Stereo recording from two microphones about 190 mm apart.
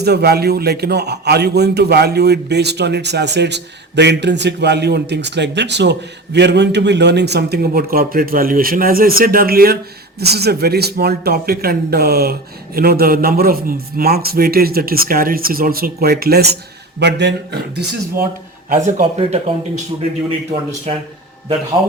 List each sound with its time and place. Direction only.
0.0 s a man's voice: 60° right (ahead or behind)
17.0 s a man's voice: 65° right (ahead or behind)
18.7 s speech: 40° right (ahead or behind)